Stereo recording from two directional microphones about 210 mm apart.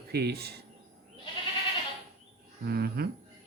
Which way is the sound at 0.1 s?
50° right (ahead or behind).